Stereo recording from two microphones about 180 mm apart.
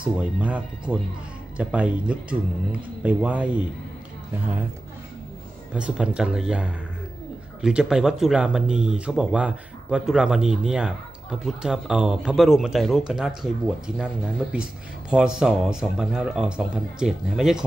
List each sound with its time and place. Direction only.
0.1 s speech: 5° right (ahead or behind)
5.8 s speech: 5° right (ahead or behind)